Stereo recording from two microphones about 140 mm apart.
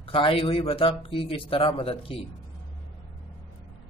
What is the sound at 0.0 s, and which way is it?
Speech, 40° left (ahead or behind).